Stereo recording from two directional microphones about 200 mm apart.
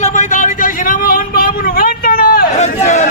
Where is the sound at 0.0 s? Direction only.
40° left (ahead or behind).